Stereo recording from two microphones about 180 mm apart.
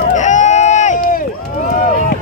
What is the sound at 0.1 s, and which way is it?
Run, 40° left (ahead or behind).